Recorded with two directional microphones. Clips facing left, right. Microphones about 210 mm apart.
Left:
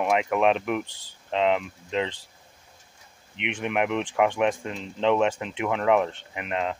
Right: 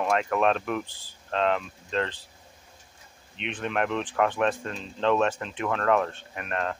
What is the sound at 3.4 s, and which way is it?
Speech, 15° left (ahead or behind).